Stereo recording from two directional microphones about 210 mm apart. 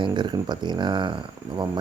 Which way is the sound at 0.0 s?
20° right (ahead or behind).